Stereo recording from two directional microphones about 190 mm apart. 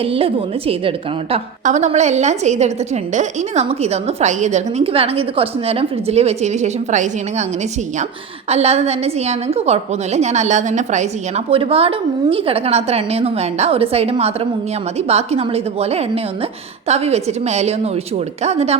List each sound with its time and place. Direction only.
0.0 s a woman's voice: 30° right (ahead or behind)
8.4 s a woman's voice: 35° right (ahead or behind)